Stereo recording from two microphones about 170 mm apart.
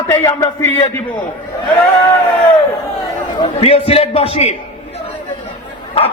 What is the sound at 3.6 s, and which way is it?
Speech, 35° left (ahead or behind).